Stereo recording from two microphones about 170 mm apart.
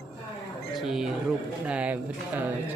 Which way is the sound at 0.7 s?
5° right (ahead or behind).